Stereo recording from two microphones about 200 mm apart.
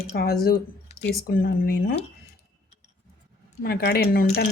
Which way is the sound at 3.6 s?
50° left (ahead or behind).